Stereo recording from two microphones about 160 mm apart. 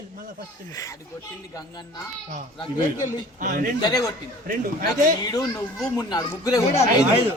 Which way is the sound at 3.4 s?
55° right (ahead or behind).